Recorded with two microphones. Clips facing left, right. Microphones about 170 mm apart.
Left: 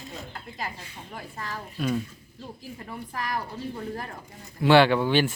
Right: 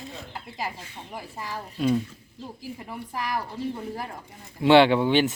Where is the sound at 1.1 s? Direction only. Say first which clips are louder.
Right 1 dB; 10° right (ahead or behind).